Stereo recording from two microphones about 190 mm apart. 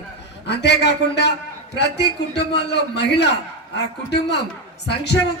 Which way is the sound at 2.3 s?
60° left (ahead or behind).